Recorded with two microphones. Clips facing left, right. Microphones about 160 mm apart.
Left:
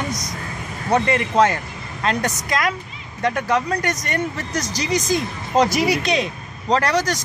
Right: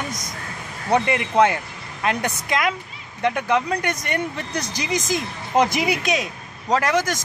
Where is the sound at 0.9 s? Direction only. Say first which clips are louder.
Left 1 dB; 15° right (ahead or behind).